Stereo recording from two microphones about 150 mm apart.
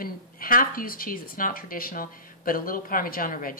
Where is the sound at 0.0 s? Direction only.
70° left (ahead or behind).